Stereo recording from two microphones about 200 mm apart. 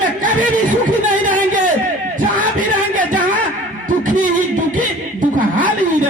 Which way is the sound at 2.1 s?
40° right (ahead or behind).